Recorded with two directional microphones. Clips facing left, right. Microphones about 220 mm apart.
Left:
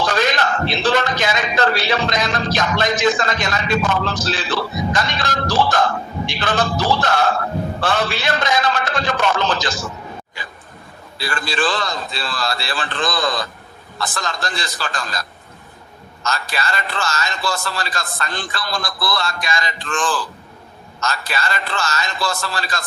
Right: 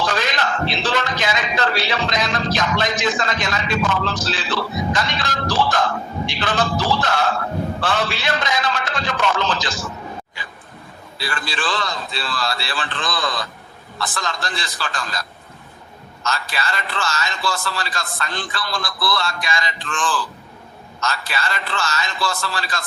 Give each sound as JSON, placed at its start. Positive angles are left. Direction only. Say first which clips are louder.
{"t": 0.0, "sound": "a man's voice", "louder": "left 3 dB", "side_deg": 45}
{"t": 11.2, "sound": "a man's voice", "louder": "left 5 dB", "side_deg": 45}
{"t": 16.2, "sound": "a man's voice", "louder": "left 1 dB", "side_deg": 45}